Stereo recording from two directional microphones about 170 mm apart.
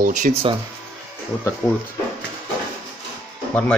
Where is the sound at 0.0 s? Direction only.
50° right (ahead or behind).